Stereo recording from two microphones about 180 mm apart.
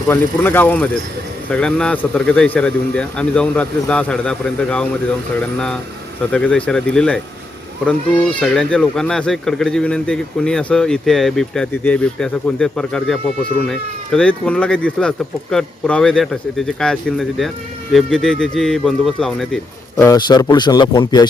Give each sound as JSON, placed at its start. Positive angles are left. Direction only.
{"t": 0.1, "sound": "speech", "side_deg": 10}
{"t": 6.3, "sound": "speech", "side_deg": 5}
{"t": 20.0, "sound": "speech", "side_deg": 20}